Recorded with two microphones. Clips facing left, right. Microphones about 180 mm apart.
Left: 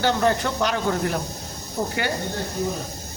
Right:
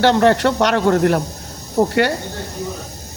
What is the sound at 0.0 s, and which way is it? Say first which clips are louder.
Speech: right 8 dB; 70° right (ahead or behind).